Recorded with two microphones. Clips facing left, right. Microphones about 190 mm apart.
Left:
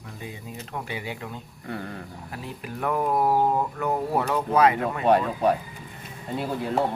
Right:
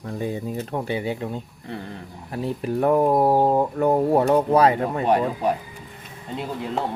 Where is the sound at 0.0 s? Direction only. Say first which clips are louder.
Right 11 dB; 40° right (ahead or behind).